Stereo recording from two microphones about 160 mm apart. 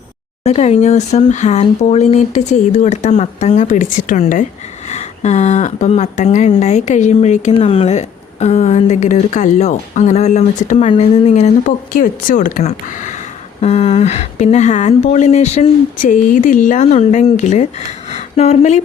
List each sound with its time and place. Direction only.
0.4 s speech: 45° left (ahead or behind)
4.9 s speech: 45° left (ahead or behind)